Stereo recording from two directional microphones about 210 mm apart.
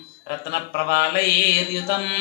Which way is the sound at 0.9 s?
50° left (ahead or behind).